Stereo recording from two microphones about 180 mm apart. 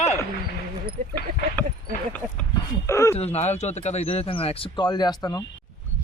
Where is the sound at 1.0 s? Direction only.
55° right (ahead or behind).